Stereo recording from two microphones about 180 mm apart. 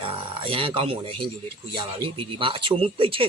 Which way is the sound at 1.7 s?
25° right (ahead or behind).